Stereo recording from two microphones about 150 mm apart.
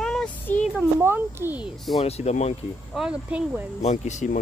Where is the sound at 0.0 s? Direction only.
5° left (ahead or behind).